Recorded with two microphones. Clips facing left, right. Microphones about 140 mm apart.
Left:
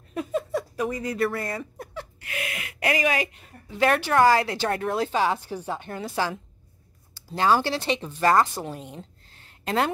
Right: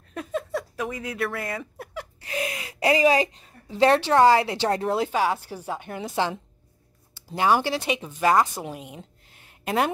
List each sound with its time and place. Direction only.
0.1 s a sound: centre (ahead or behind)
2.2 s speech: 30° right (ahead or behind)
4.9 s speech: 10° right (ahead or behind)
5.9 s a woman's voice: 20° right (ahead or behind)